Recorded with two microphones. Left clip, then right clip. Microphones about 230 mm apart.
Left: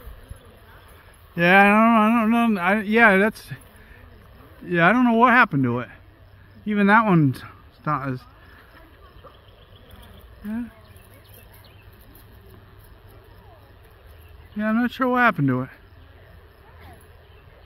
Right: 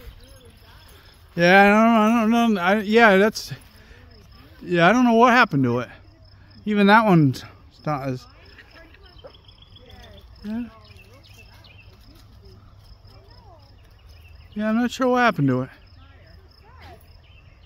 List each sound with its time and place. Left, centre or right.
1.3 s speech: centre
14.6 s speech: centre